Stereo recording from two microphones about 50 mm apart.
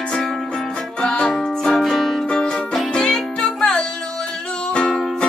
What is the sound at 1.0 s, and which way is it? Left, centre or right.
Music, centre.